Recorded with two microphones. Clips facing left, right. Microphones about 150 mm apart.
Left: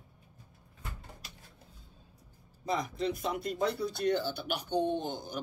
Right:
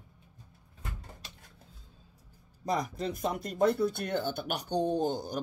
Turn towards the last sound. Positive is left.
turn(degrees=-40)  # may be behind; listen again after turning